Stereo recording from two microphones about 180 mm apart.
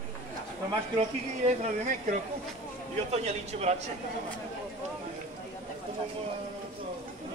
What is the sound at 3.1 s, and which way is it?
Speech, 35° right (ahead or behind).